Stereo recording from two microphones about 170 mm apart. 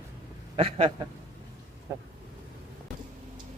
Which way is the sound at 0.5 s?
35° right (ahead or behind).